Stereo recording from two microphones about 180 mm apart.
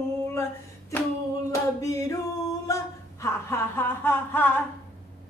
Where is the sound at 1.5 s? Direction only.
20° left (ahead or behind).